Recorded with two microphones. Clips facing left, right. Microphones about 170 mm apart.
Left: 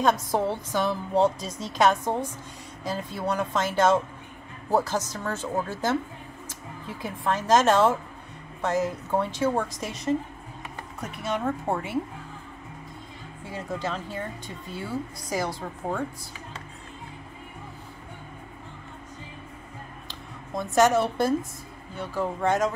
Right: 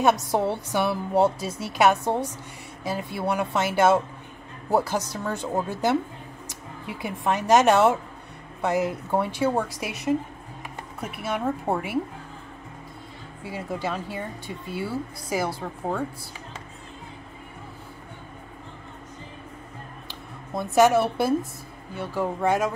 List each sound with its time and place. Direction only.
0.0 s a woman's voice: 15° right (ahead or behind)
11.0 s a woman's voice: 10° right (ahead or behind)
13.5 s a woman's voice: 10° right (ahead or behind)
20.5 s a woman's voice: 10° right (ahead or behind)